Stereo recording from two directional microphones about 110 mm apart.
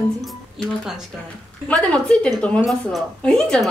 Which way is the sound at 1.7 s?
10° left (ahead or behind).